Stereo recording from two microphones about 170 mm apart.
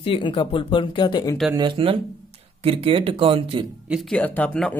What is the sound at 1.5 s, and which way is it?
Speech, 30° right (ahead or behind).